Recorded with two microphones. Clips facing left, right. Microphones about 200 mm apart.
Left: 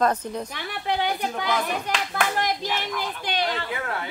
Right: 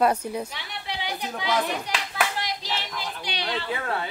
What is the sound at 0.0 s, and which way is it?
Speech, 10° right (ahead or behind).